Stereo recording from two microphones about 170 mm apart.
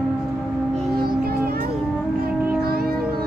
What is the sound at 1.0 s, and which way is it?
Music, 60° right (ahead or behind).